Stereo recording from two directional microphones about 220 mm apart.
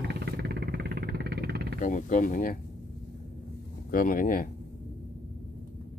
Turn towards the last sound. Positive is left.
turn(degrees=40)  # may be behind; listen again after turning